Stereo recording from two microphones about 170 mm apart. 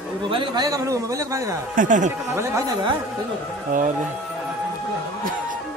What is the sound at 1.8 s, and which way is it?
Speech, 50° right (ahead or behind).